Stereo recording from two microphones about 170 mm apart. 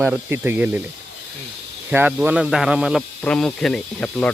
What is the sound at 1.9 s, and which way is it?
Speech, 10° right (ahead or behind).